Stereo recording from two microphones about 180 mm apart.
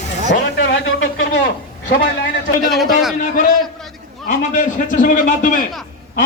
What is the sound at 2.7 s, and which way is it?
Speech, centre (ahead or behind).